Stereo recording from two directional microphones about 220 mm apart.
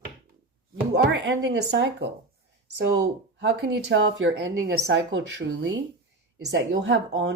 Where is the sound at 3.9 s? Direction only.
55° right (ahead or behind).